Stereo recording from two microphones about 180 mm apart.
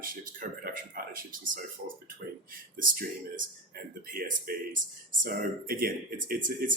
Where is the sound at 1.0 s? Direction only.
50° right (ahead or behind).